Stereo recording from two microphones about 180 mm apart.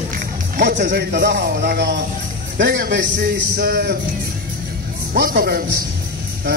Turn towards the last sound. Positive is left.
turn(degrees=-60)  # may be behind; listen again after turning